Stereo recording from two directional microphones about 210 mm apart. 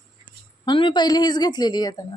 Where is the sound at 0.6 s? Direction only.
20° left (ahead or behind).